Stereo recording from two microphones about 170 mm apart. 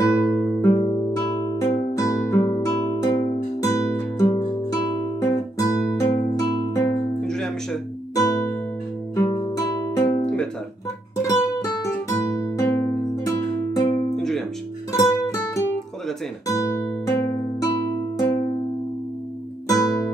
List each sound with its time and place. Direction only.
0.1 s music: 20° left (ahead or behind)
0.7 s music: 25° left (ahead or behind)
4.4 s music: 25° left (ahead or behind)
7.2 s music: 5° left (ahead or behind)
8.1 s music: 20° left (ahead or behind)
9.1 s guitar: 25° left (ahead or behind)
9.9 s music: 15° left (ahead or behind)
10.2 s music: 5° left (ahead or behind)
11.2 s music: 20° left (ahead or behind)
14.1 s music: centre (ahead or behind)
16.4 s music: 20° left (ahead or behind)
19.7 s music: 20° left (ahead or behind)